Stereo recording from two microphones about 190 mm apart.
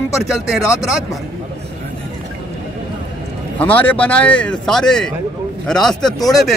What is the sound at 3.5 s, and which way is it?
Speech, 10° left (ahead or behind).